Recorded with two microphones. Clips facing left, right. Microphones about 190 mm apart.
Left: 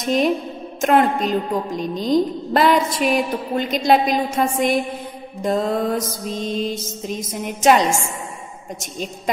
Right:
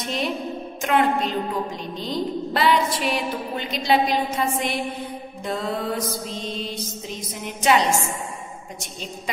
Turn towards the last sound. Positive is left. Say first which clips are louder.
# left 4 dB
turn(degrees=45)  # may be behind; listen again after turning